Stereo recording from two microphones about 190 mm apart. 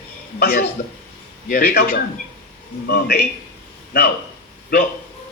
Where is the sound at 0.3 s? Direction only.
50° left (ahead or behind).